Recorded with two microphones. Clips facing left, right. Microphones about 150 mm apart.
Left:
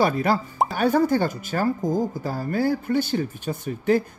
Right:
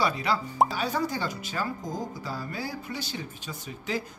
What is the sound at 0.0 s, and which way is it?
Speech, 50° left (ahead or behind).